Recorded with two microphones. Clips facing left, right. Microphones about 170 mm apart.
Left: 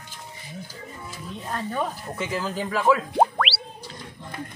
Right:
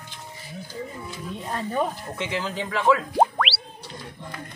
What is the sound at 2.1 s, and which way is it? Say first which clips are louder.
Speech: left 1 dB; 5° left (ahead or behind).